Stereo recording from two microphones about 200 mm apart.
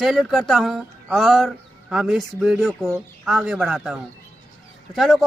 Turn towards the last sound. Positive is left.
turn(degrees=0)  # may be behind; listen again after turning